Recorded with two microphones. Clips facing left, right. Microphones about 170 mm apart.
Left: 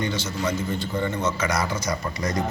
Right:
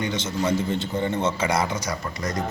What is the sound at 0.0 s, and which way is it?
A man's voice, 15° right (ahead or behind).